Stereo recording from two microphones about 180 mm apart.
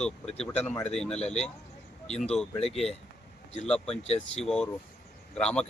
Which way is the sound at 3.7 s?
5° left (ahead or behind).